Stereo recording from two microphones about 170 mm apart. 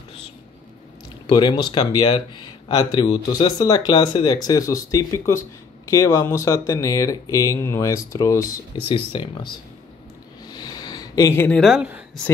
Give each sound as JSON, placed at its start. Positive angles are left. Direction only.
{"t": 1.2, "sound": "speech", "side_deg": 25}
{"t": 8.8, "sound": "speech", "side_deg": 30}
{"t": 10.4, "sound": "a sound", "side_deg": 25}
{"t": 11.6, "sound": "speech", "side_deg": -5}